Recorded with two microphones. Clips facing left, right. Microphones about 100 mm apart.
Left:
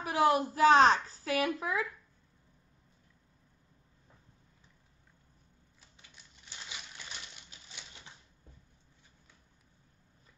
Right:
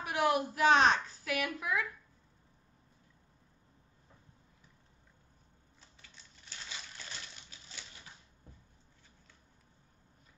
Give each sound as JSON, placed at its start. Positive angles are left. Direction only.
{"t": 0.0, "sound": "a woman's voice", "side_deg": 35}
{"t": 5.8, "sound": "crushing", "side_deg": 15}